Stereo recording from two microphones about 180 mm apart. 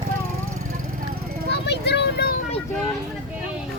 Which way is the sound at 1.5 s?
70° left (ahead or behind).